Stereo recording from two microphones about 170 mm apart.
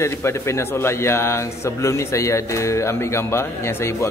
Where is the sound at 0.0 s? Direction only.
15° left (ahead or behind).